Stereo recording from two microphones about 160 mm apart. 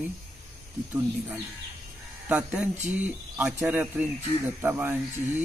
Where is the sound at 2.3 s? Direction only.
10° right (ahead or behind).